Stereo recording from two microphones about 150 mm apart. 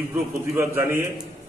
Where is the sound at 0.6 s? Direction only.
20° right (ahead or behind).